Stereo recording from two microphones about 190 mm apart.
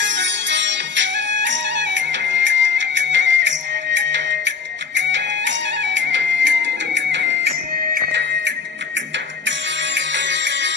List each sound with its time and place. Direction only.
0.0 s music: 70° right (ahead or behind)